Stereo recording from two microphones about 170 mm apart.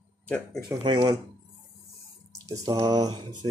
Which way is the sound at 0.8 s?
25° right (ahead or behind).